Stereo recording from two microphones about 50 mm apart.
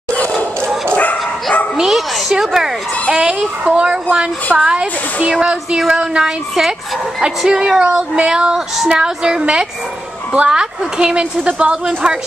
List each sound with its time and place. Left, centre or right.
0.9 s bow-wow: left
1.8 s a child's voice: centre; by 8.5 s right
8.5 s a child's voice: centre